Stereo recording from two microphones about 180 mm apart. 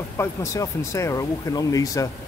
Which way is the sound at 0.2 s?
15° left (ahead or behind).